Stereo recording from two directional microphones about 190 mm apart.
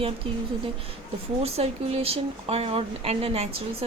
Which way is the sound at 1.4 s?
30° right (ahead or behind).